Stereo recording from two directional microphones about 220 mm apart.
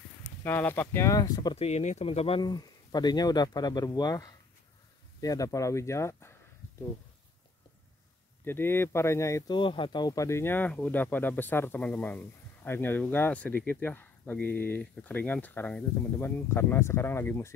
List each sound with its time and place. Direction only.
0.4 s speech: 10° left (ahead or behind)
8.5 s speech: 10° left (ahead or behind)